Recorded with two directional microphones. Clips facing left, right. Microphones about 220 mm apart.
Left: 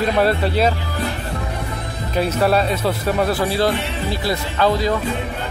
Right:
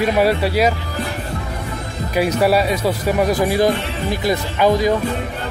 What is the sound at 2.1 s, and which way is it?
Speech, 10° right (ahead or behind).